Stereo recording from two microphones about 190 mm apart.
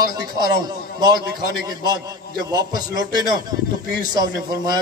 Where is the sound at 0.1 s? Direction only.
20° right (ahead or behind).